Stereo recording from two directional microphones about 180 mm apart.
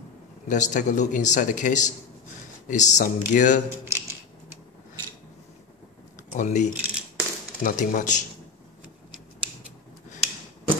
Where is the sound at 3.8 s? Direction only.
15° right (ahead or behind).